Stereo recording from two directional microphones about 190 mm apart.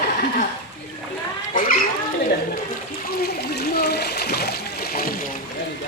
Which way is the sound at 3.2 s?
60° left (ahead or behind).